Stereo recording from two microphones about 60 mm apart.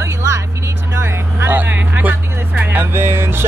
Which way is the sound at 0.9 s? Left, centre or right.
Right.